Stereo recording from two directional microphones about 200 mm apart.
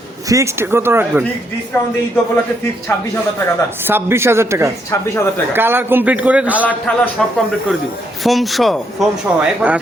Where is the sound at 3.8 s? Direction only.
10° right (ahead or behind).